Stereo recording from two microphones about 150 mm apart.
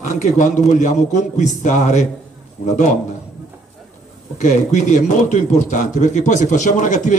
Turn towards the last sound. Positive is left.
turn(degrees=55)  # may be behind; listen again after turning